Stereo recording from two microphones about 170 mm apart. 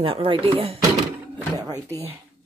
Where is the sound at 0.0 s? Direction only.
30° right (ahead or behind).